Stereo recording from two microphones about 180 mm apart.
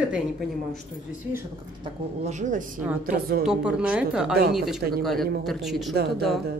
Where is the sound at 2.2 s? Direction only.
40° right (ahead or behind).